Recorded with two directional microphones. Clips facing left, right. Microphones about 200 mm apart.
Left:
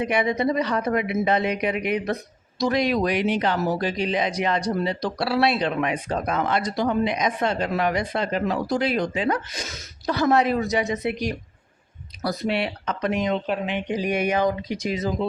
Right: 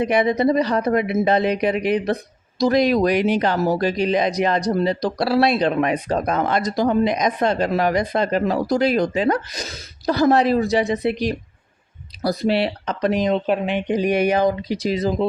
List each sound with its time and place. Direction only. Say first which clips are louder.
0.0 s speech: right 5 dB; 35° right (ahead or behind)